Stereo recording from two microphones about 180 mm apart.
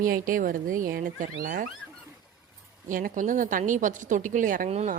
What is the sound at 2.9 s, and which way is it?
A woman's voice, 50° right (ahead or behind).